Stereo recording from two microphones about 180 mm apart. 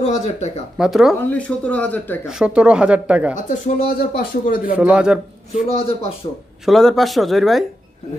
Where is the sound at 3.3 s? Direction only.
45° left (ahead or behind).